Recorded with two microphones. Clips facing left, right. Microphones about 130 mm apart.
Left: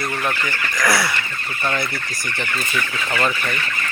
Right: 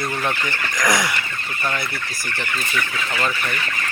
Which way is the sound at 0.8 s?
20° right (ahead or behind).